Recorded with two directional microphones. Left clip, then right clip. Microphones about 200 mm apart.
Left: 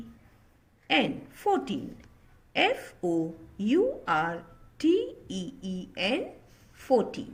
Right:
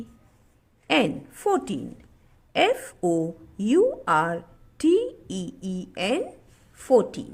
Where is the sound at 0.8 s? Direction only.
55° right (ahead or behind).